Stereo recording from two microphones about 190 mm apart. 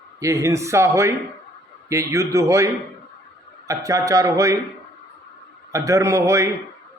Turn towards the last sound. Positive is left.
turn(degrees=-15)  # may be behind; listen again after turning